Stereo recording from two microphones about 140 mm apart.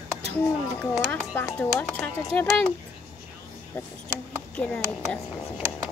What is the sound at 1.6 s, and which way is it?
Speech, 10° left (ahead or behind).